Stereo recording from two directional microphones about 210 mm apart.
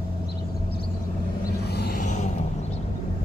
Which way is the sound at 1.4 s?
45° left (ahead or behind).